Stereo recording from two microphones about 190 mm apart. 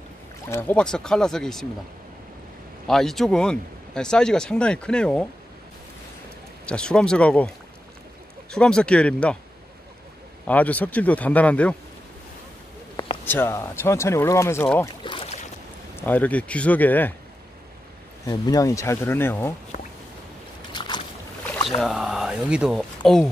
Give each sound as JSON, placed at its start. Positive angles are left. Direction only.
{"t": 0.5, "sound": "speech", "side_deg": 10}
{"t": 2.9, "sound": "speech", "side_deg": 0}
{"t": 6.6, "sound": "speech", "side_deg": 5}
{"t": 10.4, "sound": "speech", "side_deg": 10}
{"t": 13.2, "sound": "speech", "side_deg": 10}
{"t": 15.0, "sound": "boat", "side_deg": 30}
{"t": 16.0, "sound": "speech", "side_deg": 10}
{"t": 18.2, "sound": "speech", "side_deg": 20}
{"t": 20.7, "sound": "boat", "side_deg": 25}
{"t": 21.6, "sound": "speech", "side_deg": 0}